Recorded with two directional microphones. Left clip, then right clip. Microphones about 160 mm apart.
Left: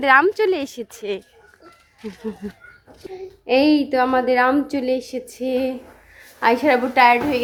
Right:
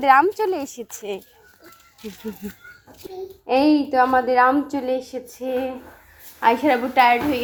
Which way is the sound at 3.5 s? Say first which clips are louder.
Left 1 dB; 40° left (ahead or behind).